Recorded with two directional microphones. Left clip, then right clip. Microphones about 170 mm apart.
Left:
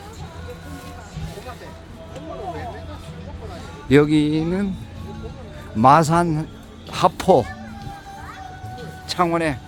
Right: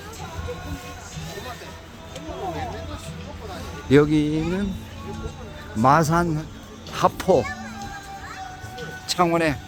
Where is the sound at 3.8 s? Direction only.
15° left (ahead or behind).